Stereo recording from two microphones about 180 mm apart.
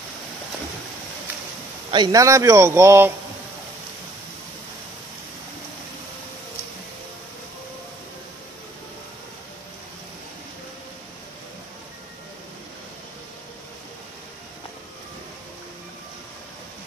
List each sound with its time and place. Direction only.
1.9 s a man's voice: 20° right (ahead or behind)